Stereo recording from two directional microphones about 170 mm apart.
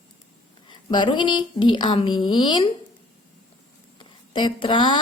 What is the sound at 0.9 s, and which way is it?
A woman's voice, 25° left (ahead or behind).